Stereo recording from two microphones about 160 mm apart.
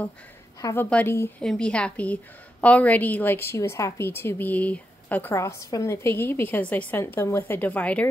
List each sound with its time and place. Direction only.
0.6 s a woman's voice: 20° left (ahead or behind)
1.4 s a woman's voice: 5° left (ahead or behind)